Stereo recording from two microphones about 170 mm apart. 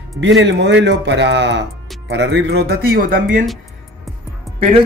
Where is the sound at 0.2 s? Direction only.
90° right; by 3.4 s 60° right (ahead or behind).